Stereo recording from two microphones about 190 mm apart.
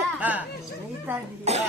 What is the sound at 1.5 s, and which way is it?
Cough, 35° right (ahead or behind).